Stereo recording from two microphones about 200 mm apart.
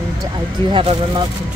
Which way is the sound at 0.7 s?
25° right (ahead or behind).